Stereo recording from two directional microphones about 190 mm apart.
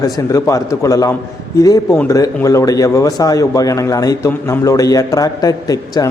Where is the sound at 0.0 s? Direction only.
15° left (ahead or behind).